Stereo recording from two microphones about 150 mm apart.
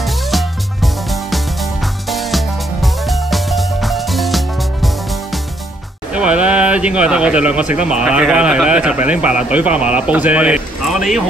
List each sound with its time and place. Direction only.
0.0 s music: centre (ahead or behind)
6.1 s speech: 10° right (ahead or behind)